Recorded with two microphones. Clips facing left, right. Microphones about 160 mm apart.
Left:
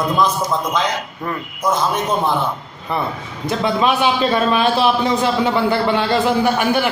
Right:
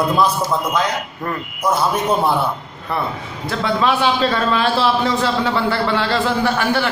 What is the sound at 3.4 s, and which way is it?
A man's voice, 20° left (ahead or behind).